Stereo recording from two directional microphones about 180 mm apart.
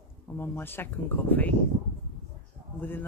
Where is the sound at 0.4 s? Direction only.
10° left (ahead or behind).